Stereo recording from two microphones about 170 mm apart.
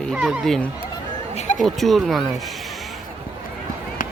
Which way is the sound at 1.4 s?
45° left (ahead or behind).